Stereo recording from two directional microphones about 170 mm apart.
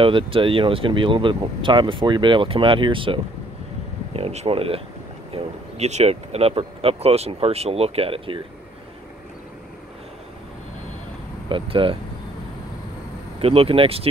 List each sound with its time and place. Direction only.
0.0 s speech: 30° right (ahead or behind)
11.4 s speech: 30° right (ahead or behind)
13.4 s speech: 35° right (ahead or behind)